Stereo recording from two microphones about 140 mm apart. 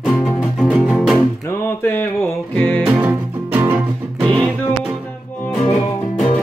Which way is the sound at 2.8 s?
10° right (ahead or behind).